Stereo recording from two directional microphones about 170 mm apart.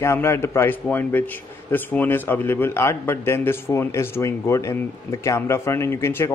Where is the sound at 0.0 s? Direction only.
15° left (ahead or behind).